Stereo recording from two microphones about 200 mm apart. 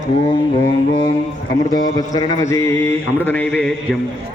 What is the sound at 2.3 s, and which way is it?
Mantra, 15° left (ahead or behind).